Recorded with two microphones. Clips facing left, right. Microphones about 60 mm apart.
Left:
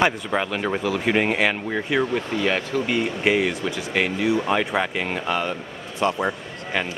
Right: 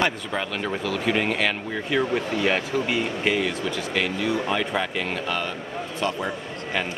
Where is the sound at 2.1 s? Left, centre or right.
Centre.